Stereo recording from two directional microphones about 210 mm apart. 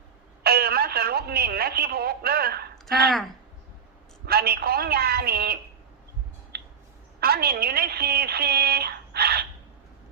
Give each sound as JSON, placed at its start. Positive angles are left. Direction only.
{"t": 0.4, "sound": "telephone", "side_deg": -45}
{"t": 4.3, "sound": "a woman's voice", "side_deg": -50}
{"t": 6.5, "sound": "a sound", "side_deg": -50}
{"t": 7.2, "sound": "a woman's voice", "side_deg": -45}